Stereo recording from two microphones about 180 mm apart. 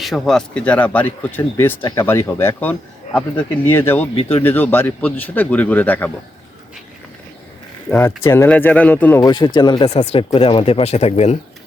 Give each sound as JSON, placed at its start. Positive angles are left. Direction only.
{"t": 0.0, "sound": "speech", "side_deg": 0}
{"t": 4.1, "sound": "speech", "side_deg": 30}
{"t": 4.4, "sound": "speech", "side_deg": 10}
{"t": 7.9, "sound": "speech", "side_deg": 15}
{"t": 9.2, "sound": "speech", "side_deg": 25}